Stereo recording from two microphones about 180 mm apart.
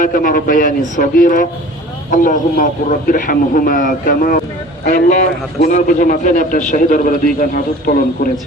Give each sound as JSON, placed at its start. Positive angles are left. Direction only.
{"t": 0.0, "sound": "a man's voice", "side_deg": 50}